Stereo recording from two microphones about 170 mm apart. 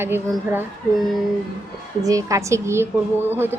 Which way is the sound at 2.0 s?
20° right (ahead or behind).